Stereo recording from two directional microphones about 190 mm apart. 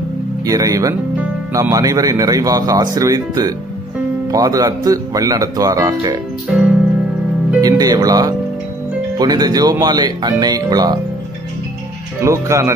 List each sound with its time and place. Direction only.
0.5 s speech: 15° right (ahead or behind)
6.5 s music: 5° right (ahead or behind)
7.6 s speech: 20° right (ahead or behind)
12.2 s speech: 15° right (ahead or behind)